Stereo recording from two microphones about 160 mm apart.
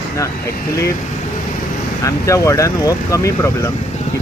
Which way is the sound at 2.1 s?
20° left (ahead or behind).